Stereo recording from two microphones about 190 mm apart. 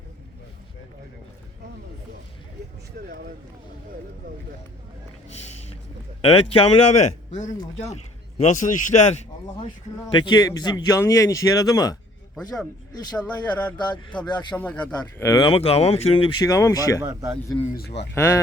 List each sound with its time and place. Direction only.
5.3 s speech: 35° left (ahead or behind)
10.1 s speech: 25° left (ahead or behind)
13.3 s speech: 20° left (ahead or behind)
14.5 s speech: 10° left (ahead or behind)
14.9 s speech: 20° left (ahead or behind)
17.0 s speech: 20° right (ahead or behind)
18.1 s speech: 15° left (ahead or behind)